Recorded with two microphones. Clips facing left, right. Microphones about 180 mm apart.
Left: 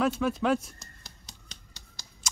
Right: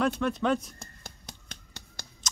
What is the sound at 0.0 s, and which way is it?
Speech, 5° left (ahead or behind).